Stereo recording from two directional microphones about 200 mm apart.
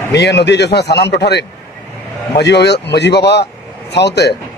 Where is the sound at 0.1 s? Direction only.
60° left (ahead or behind).